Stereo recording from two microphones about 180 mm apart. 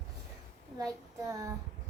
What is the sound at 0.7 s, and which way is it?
Speech, 20° right (ahead or behind).